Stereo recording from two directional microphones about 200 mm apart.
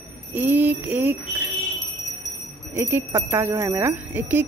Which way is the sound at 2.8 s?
15° right (ahead or behind).